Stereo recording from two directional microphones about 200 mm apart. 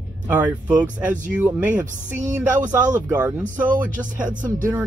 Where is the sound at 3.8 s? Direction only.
40° right (ahead or behind).